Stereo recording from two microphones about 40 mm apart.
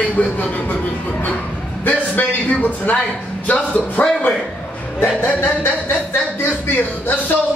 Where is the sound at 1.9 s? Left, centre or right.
Left.